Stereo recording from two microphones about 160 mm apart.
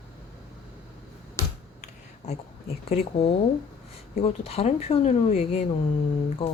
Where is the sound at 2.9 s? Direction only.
35° left (ahead or behind).